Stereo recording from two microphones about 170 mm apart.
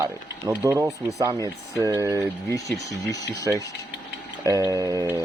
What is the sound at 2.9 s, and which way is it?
Speech, 20° left (ahead or behind).